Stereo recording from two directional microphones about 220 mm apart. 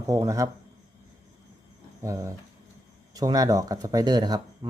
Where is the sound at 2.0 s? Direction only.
15° right (ahead or behind).